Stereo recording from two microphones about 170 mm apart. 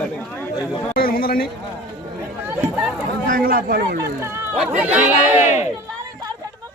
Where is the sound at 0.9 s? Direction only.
60° left (ahead or behind).